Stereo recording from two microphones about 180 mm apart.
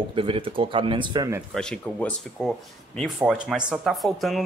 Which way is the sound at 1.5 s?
5° left (ahead or behind).